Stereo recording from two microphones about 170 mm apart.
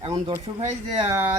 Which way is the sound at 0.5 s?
25° right (ahead or behind).